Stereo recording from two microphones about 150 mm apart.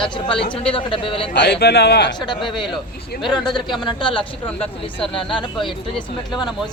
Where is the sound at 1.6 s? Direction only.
90° left.